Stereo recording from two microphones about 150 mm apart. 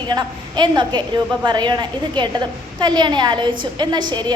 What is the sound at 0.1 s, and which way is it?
A woman's voice, 30° right (ahead or behind).